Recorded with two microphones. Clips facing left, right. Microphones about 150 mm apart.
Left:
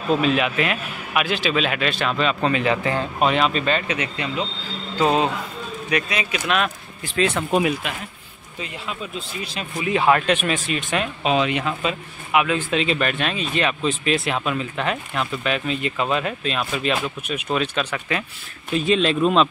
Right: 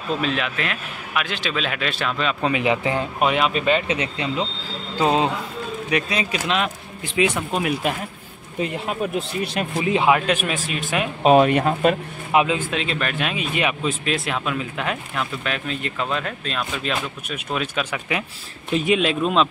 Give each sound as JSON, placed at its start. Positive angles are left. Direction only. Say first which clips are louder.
{"t": 0.2, "sound": "speech", "louder": "left 4 dB", "side_deg": 5}
{"t": 2.5, "sound": "a man's voice", "louder": "even", "side_deg": -15}
{"t": 5.9, "sound": "a man's voice", "louder": "even", "side_deg": -30}
{"t": 8.5, "sound": "speech", "louder": "right 7 dB", "side_deg": -55}
{"t": 9.8, "sound": "a man's voice", "louder": "right 1 dB", "side_deg": -25}
{"t": 10.0, "sound": "speech", "louder": "left 3 dB", "side_deg": -5}
{"t": 11.2, "sound": "speech", "louder": "right 8 dB", "side_deg": -50}
{"t": 12.3, "sound": "speech", "louder": "right 2 dB", "side_deg": -35}
{"t": 12.7, "sound": "speech", "louder": "left 3 dB", "side_deg": 0}
{"t": 14.0, "sound": "a man's voice", "louder": "left 2 dB", "side_deg": 0}
{"t": 18.9, "sound": "speech", "louder": "left 2 dB", "side_deg": -5}